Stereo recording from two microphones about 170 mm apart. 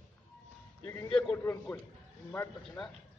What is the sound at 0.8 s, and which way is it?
Speech, 15° left (ahead or behind).